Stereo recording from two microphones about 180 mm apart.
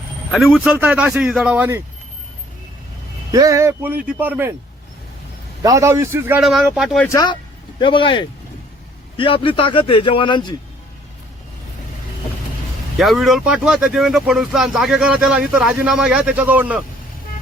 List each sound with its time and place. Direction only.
0.3 s speech: centre (ahead or behind)
3.3 s speech: 15° right (ahead or behind)
5.6 s speech: 15° right (ahead or behind)
6.4 s speech: centre (ahead or behind)
7.0 s a man's voice: 20° left (ahead or behind)
13.0 s speech: centre (ahead or behind)